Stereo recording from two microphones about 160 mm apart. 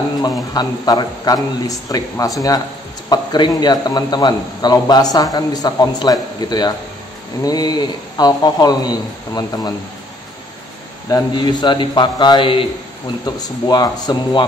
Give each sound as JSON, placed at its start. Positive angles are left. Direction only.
{"t": 0.2, "sound": "a man's voice", "side_deg": 25}
{"t": 11.1, "sound": "a man's voice", "side_deg": 25}